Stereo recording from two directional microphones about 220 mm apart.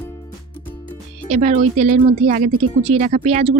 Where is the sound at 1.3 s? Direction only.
30° right (ahead or behind).